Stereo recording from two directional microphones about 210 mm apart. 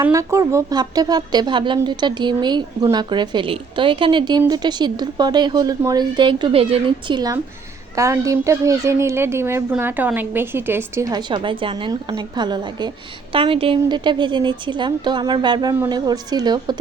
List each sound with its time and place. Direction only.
0.0 s a woman's voice: 15° right (ahead or behind)